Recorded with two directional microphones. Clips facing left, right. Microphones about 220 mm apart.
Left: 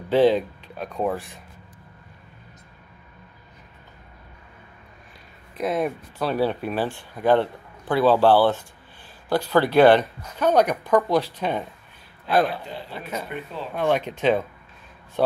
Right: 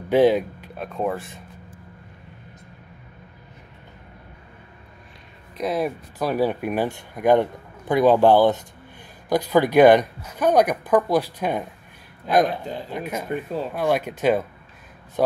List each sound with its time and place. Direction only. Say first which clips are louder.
0.1 s speech: right 1 dB; 10° right (ahead or behind)
5.6 s speech: even; centre (ahead or behind)
6.1 s speech: right 2 dB; 10° right (ahead or behind)
13.3 s speech: right 6 dB; 40° right (ahead or behind)
13.7 s speech: left 1 dB; 10° right (ahead or behind)